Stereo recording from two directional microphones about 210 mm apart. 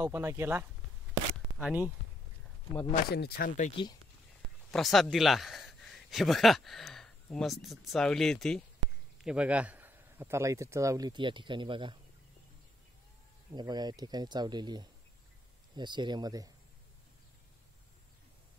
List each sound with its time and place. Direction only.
0.0 s speech: 10° right (ahead or behind)
2.9 s speech: 50° left (ahead or behind)
4.6 s speech: centre (ahead or behind); by 12.0 s 20° right (ahead or behind)
13.5 s speech: 20° right (ahead or behind)